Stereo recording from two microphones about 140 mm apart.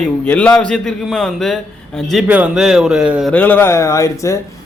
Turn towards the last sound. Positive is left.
turn(degrees=20)  # may be behind; listen again after turning